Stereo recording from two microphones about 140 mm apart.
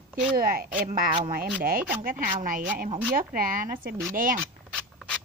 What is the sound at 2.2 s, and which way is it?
Speech, 75° right (ahead or behind).